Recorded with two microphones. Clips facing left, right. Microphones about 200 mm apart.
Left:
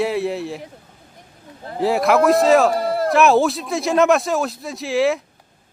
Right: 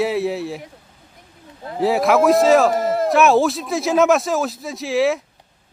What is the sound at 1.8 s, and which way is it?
A man's voice, centre (ahead or behind).